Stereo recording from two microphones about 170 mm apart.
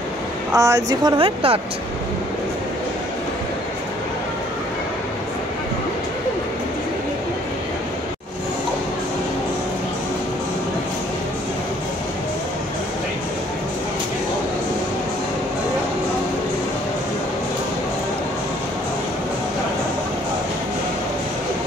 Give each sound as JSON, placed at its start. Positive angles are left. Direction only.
{"t": 0.5, "sound": "speech", "side_deg": -20}
{"t": 1.1, "sound": "speech", "side_deg": -35}